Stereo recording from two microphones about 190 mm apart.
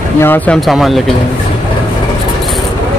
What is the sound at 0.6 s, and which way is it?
Speech, centre (ahead or behind).